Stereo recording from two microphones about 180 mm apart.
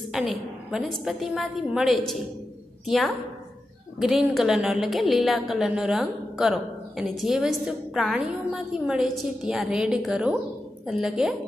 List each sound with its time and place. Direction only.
0.1 s a woman's voice: centre (ahead or behind)
4.0 s a woman's voice: centre (ahead or behind)